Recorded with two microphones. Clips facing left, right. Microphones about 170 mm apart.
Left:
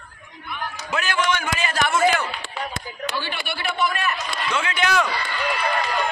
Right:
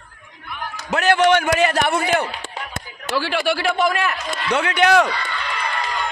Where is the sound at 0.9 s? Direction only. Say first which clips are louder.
Right 9 dB; 70° right (ahead or behind).